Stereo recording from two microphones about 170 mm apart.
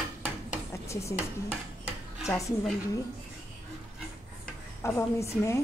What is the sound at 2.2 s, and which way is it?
Speech, 20° left (ahead or behind).